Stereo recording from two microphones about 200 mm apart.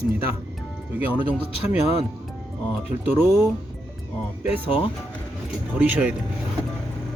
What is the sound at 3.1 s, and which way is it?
Speech, 10° right (ahead or behind).